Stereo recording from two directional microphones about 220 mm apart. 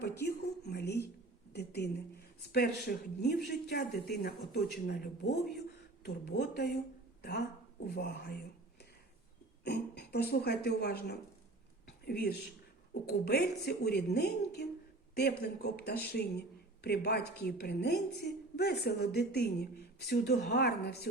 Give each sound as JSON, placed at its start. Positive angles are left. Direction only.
{"t": 0.2, "sound": "a woman's voice", "side_deg": 50}
{"t": 11.9, "sound": "a sound", "side_deg": 45}
{"t": 12.9, "sound": "speech", "side_deg": 45}